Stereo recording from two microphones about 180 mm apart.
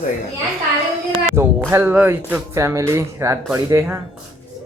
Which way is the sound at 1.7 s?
15° right (ahead or behind).